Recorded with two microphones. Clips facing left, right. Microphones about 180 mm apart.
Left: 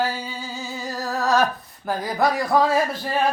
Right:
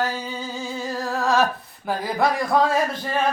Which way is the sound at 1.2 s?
Centre (ahead or behind).